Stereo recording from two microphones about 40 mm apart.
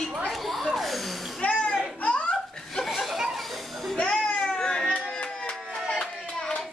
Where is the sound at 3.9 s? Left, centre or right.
Left.